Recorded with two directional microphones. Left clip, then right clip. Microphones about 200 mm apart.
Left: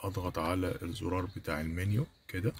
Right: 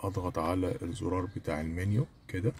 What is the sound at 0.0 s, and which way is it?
Speech, 20° right (ahead or behind).